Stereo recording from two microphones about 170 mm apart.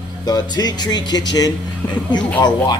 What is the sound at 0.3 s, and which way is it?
Speech, 25° left (ahead or behind).